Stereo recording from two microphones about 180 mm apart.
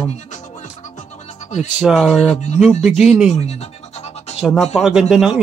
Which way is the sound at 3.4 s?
35° left (ahead or behind).